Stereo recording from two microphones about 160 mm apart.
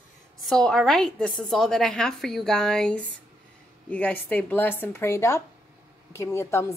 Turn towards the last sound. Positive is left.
turn(degrees=15)  # may be behind; listen again after turning